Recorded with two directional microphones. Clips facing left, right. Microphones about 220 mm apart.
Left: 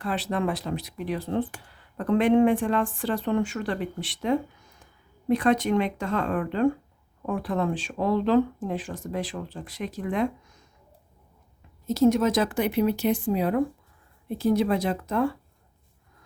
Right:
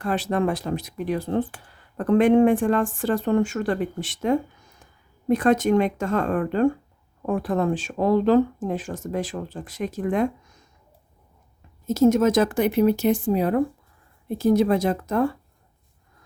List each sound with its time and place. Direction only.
0.0 s speech: 45° right (ahead or behind)
11.9 s speech: 45° right (ahead or behind)